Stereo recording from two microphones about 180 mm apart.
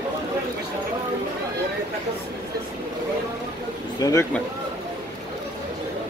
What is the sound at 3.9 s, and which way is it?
Speech, 20° left (ahead or behind).